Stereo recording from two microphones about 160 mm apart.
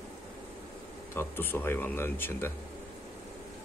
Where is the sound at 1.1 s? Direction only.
15° left (ahead or behind).